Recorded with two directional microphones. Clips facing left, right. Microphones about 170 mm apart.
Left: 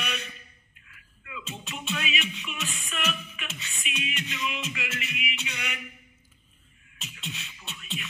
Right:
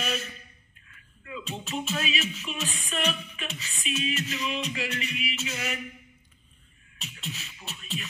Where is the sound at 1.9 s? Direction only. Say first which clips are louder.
Left 1 dB; 35° right (ahead or behind).